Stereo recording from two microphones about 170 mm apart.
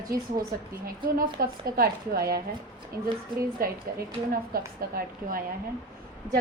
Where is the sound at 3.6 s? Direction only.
60° right (ahead or behind).